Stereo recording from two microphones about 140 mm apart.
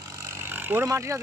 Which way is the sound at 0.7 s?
15° right (ahead or behind).